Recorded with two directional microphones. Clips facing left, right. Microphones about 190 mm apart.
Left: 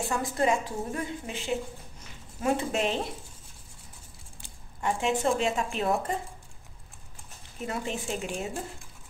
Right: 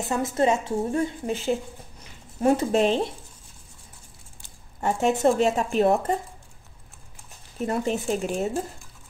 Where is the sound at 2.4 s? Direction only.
40° right (ahead or behind).